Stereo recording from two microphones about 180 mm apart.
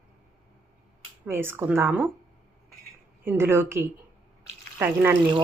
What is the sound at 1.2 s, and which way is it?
Speech, 10° right (ahead or behind).